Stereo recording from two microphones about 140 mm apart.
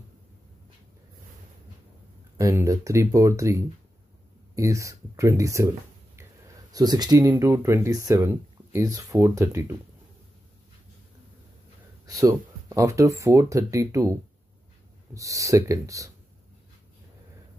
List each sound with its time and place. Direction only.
2.3 s speech: 20° right (ahead or behind)
12.1 s speech: 25° right (ahead or behind)